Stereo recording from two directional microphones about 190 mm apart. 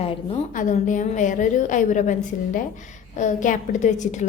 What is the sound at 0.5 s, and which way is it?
A woman's voice, 40° left (ahead or behind).